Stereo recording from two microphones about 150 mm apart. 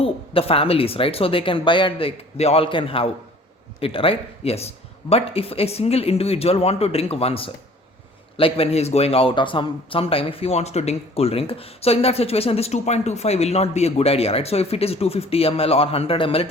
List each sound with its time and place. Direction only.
0.0 s speech: 40° left (ahead or behind)